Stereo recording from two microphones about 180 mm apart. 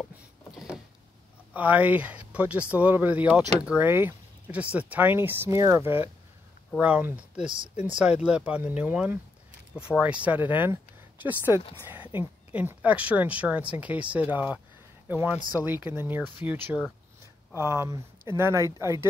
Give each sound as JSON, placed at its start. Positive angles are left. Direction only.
{"t": 0.0, "sound": "rowboat", "side_deg": -5}
{"t": 1.5, "sound": "speech", "side_deg": -10}